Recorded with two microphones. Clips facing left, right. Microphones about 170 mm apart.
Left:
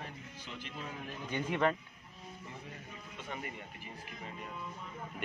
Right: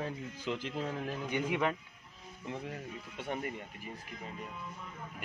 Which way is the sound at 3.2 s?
55° right (ahead or behind).